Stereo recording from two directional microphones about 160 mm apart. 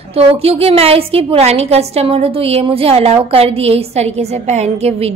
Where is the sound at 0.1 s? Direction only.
40° right (ahead or behind).